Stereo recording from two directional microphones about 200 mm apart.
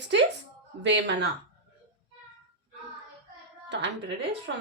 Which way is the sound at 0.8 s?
60° right (ahead or behind).